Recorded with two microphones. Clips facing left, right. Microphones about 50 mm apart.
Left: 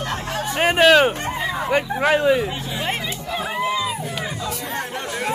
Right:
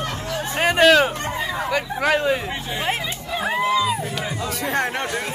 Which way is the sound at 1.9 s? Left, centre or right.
Centre.